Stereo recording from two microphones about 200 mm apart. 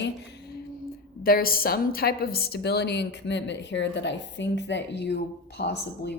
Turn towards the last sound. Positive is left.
turn(degrees=55)  # may be behind; listen again after turning